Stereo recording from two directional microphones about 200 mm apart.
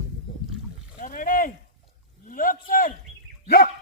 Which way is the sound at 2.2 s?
45° left (ahead or behind).